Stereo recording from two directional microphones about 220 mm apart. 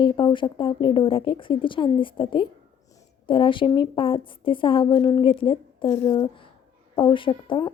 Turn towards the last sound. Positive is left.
turn(degrees=20)  # may be behind; listen again after turning